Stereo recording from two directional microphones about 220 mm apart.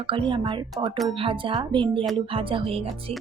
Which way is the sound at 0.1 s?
25° right (ahead or behind).